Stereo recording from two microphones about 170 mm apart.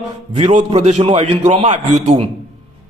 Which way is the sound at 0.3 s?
45° right (ahead or behind).